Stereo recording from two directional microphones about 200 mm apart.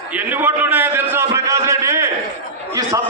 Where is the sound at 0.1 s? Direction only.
10° right (ahead or behind).